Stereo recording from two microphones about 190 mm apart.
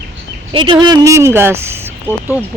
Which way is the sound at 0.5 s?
25° right (ahead or behind).